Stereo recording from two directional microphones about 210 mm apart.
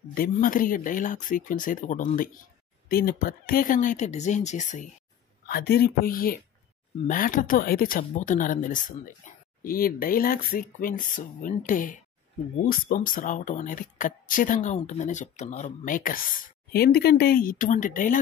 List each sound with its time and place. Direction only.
0.1 s speech: 40° left (ahead or behind)
5.5 s speech: 45° left (ahead or behind)
8.0 s speech: 35° left (ahead or behind)